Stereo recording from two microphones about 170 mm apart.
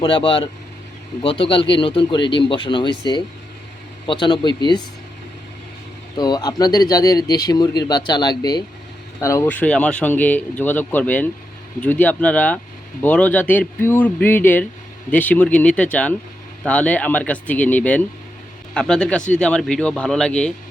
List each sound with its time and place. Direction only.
0.0 s speech: 30° left (ahead or behind)
4.0 s speech: 30° left (ahead or behind)
6.1 s speech: 25° left (ahead or behind); by 20.5 s 5° left (ahead or behind)